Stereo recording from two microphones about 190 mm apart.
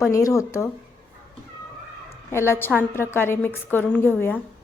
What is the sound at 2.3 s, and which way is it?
A woman's voice, 15° left (ahead or behind).